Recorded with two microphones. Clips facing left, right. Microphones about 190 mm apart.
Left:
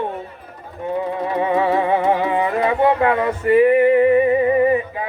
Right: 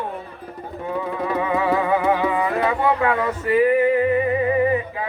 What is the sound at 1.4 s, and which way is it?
Music, 30° left (ahead or behind).